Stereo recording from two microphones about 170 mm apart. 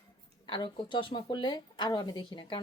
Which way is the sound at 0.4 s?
25° left (ahead or behind).